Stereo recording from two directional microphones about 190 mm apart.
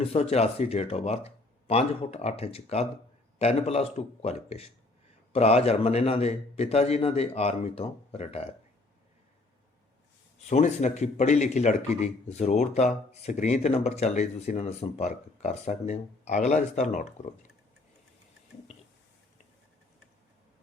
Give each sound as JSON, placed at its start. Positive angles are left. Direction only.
{"t": 0.0, "sound": "speech", "side_deg": 35}
{"t": 10.5, "sound": "speech", "side_deg": 40}